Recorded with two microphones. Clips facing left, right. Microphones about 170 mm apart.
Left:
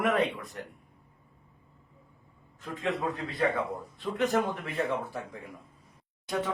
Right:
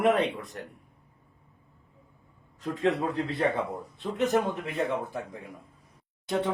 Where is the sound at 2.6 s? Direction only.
30° right (ahead or behind).